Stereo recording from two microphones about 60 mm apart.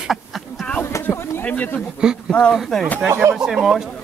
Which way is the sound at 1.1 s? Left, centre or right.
Left.